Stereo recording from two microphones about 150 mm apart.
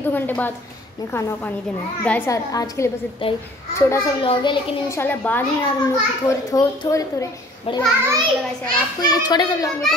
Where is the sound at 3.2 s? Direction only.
40° left (ahead or behind).